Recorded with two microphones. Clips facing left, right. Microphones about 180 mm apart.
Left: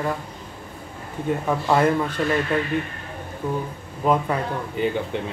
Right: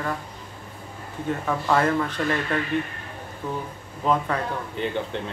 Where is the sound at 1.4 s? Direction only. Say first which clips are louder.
Left 2 dB; 15° left (ahead or behind).